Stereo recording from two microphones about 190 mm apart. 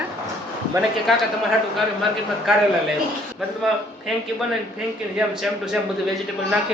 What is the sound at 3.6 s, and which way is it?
Speech, centre (ahead or behind).